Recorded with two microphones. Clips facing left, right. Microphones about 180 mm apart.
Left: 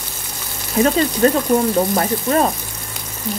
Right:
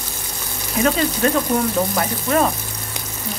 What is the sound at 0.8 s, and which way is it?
Speech, 35° left (ahead or behind).